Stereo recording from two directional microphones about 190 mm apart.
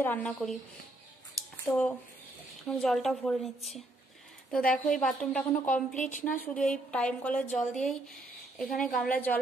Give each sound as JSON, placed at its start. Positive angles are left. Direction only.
{"t": 0.0, "sound": "a woman's voice", "side_deg": 10}
{"t": 1.7, "sound": "a woman's voice", "side_deg": 5}
{"t": 5.9, "sound": "a woman's voice", "side_deg": 40}
{"t": 6.4, "sound": "a woman's voice", "side_deg": 5}